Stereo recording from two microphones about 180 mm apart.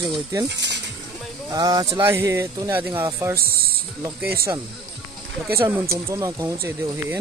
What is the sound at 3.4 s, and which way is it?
Music, 55° right (ahead or behind).